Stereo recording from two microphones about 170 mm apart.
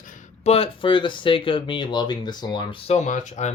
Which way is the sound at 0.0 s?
50° left (ahead or behind).